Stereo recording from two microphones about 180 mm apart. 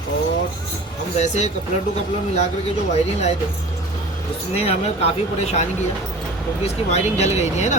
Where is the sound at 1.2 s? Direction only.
40° left (ahead or behind).